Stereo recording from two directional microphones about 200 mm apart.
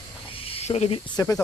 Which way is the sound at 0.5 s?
30° left (ahead or behind).